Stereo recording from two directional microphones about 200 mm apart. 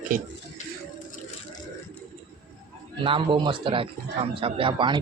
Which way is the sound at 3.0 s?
25° right (ahead or behind).